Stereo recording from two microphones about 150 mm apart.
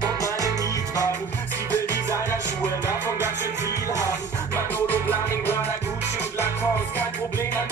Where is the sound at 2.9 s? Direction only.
15° right (ahead or behind).